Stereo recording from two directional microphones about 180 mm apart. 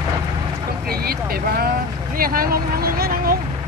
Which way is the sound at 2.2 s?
55° right (ahead or behind).